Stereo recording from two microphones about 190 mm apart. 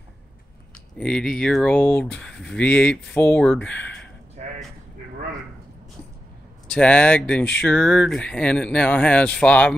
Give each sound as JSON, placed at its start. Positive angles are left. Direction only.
{"t": 0.9, "sound": "speech", "side_deg": 5}
{"t": 4.4, "sound": "a sound", "side_deg": -35}
{"t": 6.7, "sound": "speech", "side_deg": 5}